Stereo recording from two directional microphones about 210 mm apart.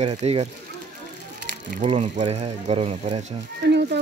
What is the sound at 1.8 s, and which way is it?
Speech, 35° right (ahead or behind).